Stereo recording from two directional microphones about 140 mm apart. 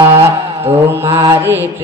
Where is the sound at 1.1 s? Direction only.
25° right (ahead or behind).